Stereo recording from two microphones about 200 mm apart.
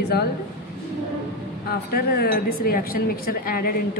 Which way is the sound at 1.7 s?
50° left (ahead or behind).